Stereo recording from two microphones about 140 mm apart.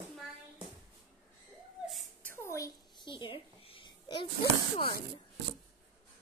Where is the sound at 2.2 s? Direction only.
15° left (ahead or behind); by 4.3 s 35° left (ahead or behind).